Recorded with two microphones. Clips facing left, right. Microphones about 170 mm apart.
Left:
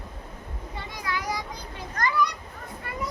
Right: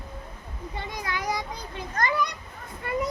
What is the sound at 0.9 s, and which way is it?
Children playing, 20° right (ahead or behind).